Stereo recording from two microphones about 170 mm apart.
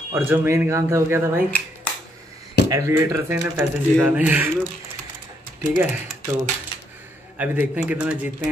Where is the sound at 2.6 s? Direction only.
15° right (ahead or behind).